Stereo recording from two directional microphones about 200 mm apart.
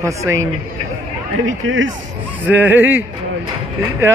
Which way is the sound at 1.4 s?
75° right (ahead or behind).